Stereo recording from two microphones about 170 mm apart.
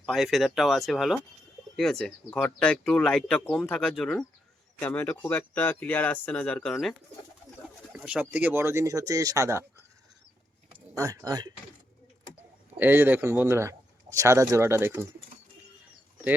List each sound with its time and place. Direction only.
0.0 s speech: centre (ahead or behind)
7.9 s speech: 5° right (ahead or behind)
10.9 s speech: 20° right (ahead or behind)
12.7 s speech: 10° right (ahead or behind)